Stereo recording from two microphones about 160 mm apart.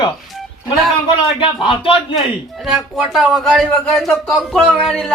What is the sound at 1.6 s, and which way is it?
Speech, 35° left (ahead or behind).